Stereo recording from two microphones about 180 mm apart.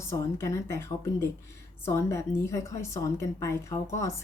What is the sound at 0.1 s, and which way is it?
A woman's voice, 15° left (ahead or behind).